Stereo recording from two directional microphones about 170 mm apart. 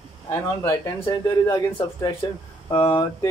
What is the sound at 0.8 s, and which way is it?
Speech, 30° left (ahead or behind).